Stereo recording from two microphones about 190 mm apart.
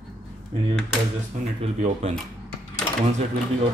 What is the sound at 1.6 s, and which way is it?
Speech, 35° right (ahead or behind).